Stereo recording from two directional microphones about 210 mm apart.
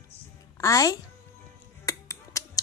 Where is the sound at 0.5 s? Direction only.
15° left (ahead or behind).